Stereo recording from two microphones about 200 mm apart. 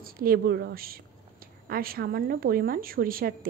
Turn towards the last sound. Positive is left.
turn(degrees=-45)  # may be behind; listen again after turning